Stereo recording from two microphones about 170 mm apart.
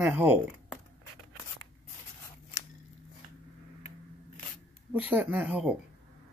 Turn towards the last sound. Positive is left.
turn(degrees=-10)  # may be behind; listen again after turning